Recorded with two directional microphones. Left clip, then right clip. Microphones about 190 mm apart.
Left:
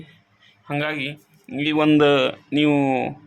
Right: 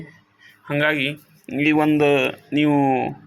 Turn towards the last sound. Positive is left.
turn(degrees=15)  # may be behind; listen again after turning